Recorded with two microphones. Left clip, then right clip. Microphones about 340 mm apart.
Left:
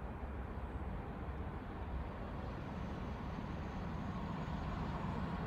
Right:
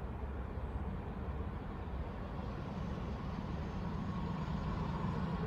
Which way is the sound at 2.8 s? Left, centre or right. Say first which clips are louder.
Right 2 dB; centre.